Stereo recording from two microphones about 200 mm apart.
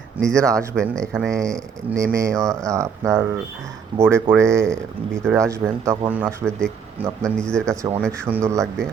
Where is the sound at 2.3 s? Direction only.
5° left (ahead or behind).